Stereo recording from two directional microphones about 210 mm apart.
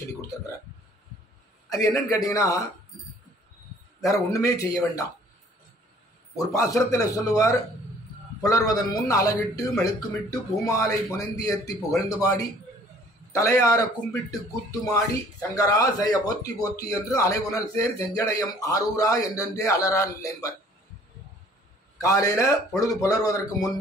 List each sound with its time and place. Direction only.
1.7 s a man's voice: 15° left (ahead or behind)
4.0 s a man's voice: 15° left (ahead or behind)
6.3 s a man's voice: 15° left (ahead or behind)
22.0 s a man's voice: 15° left (ahead or behind)